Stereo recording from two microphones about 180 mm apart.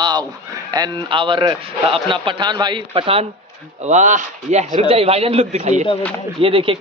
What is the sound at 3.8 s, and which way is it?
A man's voice, 40° right (ahead or behind).